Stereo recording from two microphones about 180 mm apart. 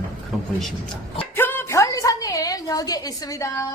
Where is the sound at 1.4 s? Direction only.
10° left (ahead or behind).